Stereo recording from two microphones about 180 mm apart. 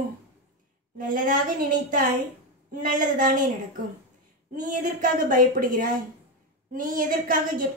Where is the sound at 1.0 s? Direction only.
50° right (ahead or behind).